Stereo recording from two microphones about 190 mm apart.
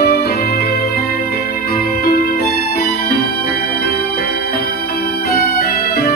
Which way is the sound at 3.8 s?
55° left (ahead or behind).